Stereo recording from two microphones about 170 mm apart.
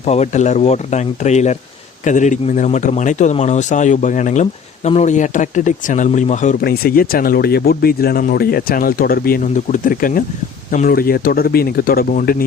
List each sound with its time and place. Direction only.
0.0 s speech: 40° left (ahead or behind)
6.7 s speech: 60° left (ahead or behind)